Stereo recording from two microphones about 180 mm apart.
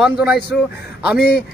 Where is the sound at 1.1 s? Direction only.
65° left (ahead or behind).